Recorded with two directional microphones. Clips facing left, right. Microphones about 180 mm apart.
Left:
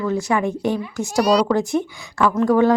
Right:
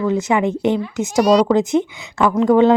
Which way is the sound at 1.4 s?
20° right (ahead or behind).